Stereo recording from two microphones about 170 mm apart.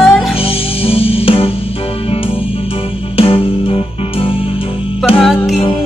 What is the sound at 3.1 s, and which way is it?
Music, 35° left (ahead or behind).